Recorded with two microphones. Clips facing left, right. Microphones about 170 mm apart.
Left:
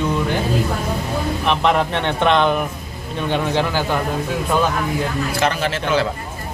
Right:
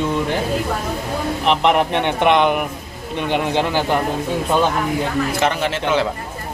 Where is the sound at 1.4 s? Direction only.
20° right (ahead or behind).